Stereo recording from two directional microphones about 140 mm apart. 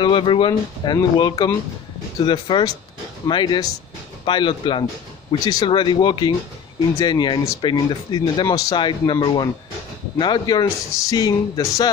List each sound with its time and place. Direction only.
0.0 s speech: 35° left (ahead or behind)